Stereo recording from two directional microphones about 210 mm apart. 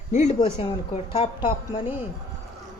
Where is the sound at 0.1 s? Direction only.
35° left (ahead or behind).